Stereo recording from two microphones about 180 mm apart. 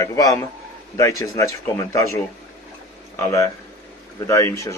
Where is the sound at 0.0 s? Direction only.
20° left (ahead or behind).